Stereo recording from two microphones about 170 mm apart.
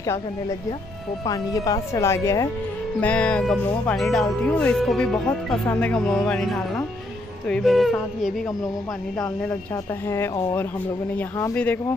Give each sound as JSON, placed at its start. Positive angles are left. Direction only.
{"t": 1.2, "sound": "speech", "side_deg": 20}
{"t": 10.0, "sound": "speech", "side_deg": 15}